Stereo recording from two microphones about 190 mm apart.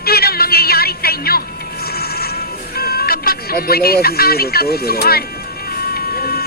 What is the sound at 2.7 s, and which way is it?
Speech, 55° left (ahead or behind).